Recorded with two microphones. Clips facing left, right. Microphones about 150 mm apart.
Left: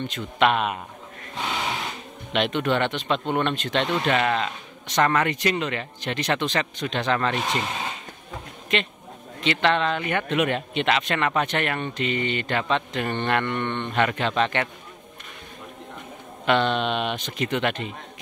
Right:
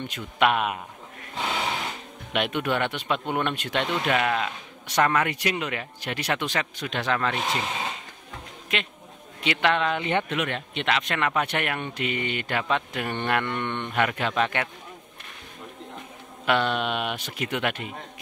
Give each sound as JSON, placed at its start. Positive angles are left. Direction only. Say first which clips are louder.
{"t": 0.0, "sound": "speech", "louder": "left 2 dB", "side_deg": -10}
{"t": 2.3, "sound": "speech", "louder": "left 3 dB", "side_deg": -10}
{"t": 8.7, "sound": "speech", "louder": "left 5 dB", "side_deg": -5}
{"t": 9.9, "sound": "speech", "louder": "right 1 dB", "side_deg": -20}
{"t": 10.3, "sound": "speech", "louder": "left 5 dB", "side_deg": 5}
{"t": 16.4, "sound": "speech", "louder": "left 2 dB", "side_deg": -5}